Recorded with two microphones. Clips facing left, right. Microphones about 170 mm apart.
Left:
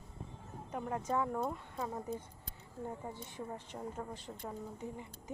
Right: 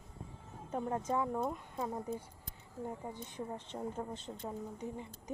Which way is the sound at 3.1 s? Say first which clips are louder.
Right 1 dB; 20° right (ahead or behind).